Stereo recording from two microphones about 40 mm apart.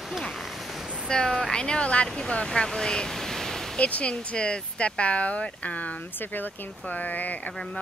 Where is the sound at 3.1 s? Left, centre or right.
Centre.